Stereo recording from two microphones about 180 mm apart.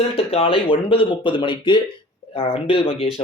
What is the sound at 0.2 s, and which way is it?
Speech, 30° left (ahead or behind).